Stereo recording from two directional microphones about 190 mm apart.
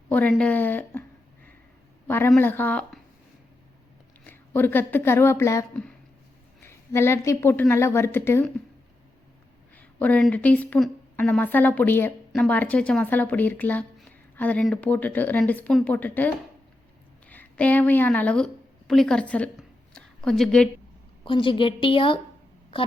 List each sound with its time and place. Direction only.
0.1 s speech: 5° left (ahead or behind)
2.0 s speech: 10° left (ahead or behind)
4.3 s speech: 10° left (ahead or behind)
9.7 s a woman's voice: 10° left (ahead or behind)
21.2 s a woman's voice: 25° left (ahead or behind)